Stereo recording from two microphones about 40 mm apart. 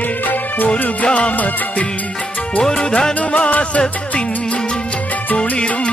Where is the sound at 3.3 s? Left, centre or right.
Left.